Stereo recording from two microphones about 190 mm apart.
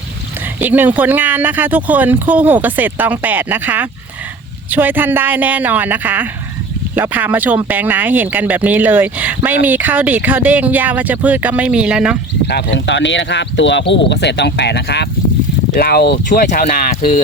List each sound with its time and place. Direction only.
0.6 s speech: 10° right (ahead or behind)
12.5 s speech: 65° left (ahead or behind); by 16.9 s 50° left (ahead or behind)
16.9 s speech: 30° left (ahead or behind)